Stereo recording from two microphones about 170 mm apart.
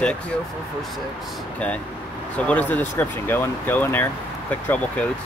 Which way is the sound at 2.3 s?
10° left (ahead or behind).